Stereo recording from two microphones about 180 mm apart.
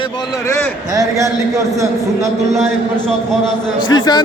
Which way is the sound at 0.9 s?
20° right (ahead or behind).